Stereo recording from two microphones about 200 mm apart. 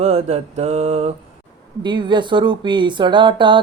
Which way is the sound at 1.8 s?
25° right (ahead or behind).